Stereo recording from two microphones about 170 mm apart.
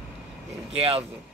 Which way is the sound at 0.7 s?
35° right (ahead or behind).